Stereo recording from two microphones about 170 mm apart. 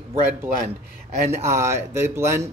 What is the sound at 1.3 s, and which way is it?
Speech, 15° right (ahead or behind).